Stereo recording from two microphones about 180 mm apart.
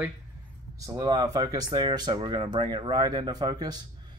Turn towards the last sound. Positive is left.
turn(degrees=-20)  # may be behind; listen again after turning